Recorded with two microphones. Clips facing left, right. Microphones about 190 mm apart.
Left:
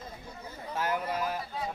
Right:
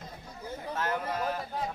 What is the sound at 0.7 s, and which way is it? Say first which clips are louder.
Speech: left 1 dB; 10° left (ahead or behind).